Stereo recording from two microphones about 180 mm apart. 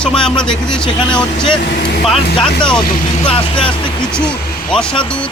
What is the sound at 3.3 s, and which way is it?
Speech, 30° left (ahead or behind).